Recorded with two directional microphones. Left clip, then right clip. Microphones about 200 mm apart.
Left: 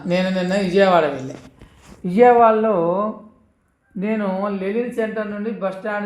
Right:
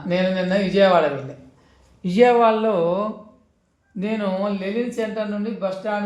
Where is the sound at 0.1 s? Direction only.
45° left (ahead or behind).